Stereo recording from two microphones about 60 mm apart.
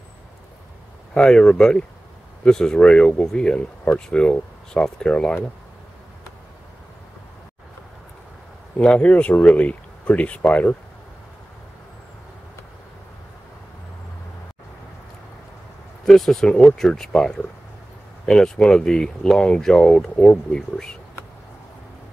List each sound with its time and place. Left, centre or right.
1.1 s speech: centre
8.7 s speech: left
16.1 s speech: centre